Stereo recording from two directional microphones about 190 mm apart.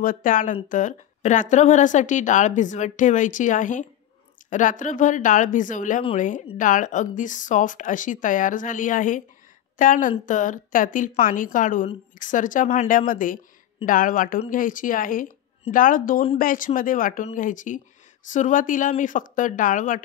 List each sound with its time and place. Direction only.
0.0 s speech: 45° left (ahead or behind)